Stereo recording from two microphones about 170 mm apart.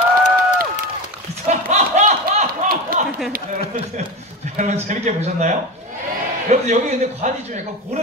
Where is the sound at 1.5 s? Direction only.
45° right (ahead or behind).